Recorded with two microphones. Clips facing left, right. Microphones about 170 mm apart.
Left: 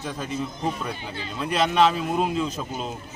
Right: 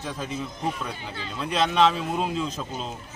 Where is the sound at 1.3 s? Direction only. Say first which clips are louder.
Left 1 dB; 5° left (ahead or behind).